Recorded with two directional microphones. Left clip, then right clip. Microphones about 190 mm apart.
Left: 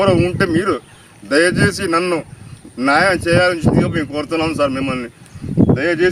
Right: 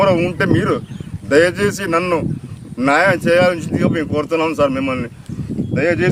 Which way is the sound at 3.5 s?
20° right (ahead or behind).